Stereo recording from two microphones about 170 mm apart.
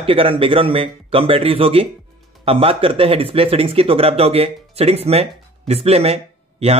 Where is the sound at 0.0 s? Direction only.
30° right (ahead or behind).